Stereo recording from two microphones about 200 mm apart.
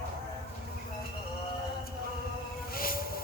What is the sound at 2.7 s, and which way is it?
Vehicle, 45° left (ahead or behind).